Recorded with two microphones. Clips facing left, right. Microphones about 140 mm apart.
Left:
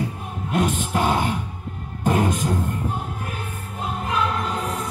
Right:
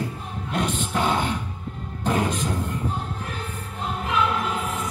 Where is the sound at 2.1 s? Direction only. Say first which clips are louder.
Left 3 dB; 50° left (ahead or behind).